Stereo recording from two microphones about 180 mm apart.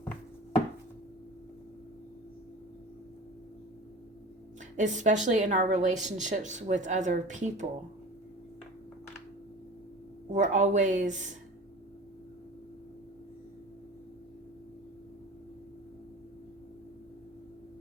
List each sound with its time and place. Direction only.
4.8 s a woman's voice: 45° right (ahead or behind)
10.3 s a woman's voice: 45° right (ahead or behind)